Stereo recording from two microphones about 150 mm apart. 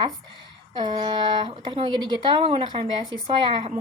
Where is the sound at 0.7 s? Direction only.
30° right (ahead or behind).